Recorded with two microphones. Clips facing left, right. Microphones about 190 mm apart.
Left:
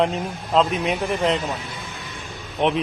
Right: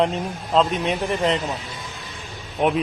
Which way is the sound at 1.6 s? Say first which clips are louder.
Left 1 dB; 55° left (ahead or behind).